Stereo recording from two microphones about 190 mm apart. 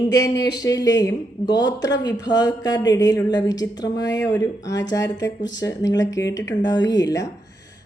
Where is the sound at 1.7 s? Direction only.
70° left (ahead or behind).